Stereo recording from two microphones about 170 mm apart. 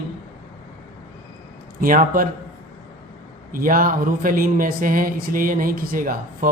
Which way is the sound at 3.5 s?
55° right (ahead or behind).